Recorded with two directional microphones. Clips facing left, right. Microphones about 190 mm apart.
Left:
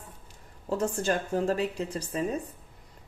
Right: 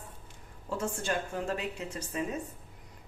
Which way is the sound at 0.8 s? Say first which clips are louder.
Left 4 dB; 40° left (ahead or behind).